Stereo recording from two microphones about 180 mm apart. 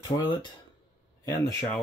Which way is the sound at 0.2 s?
25° left (ahead or behind).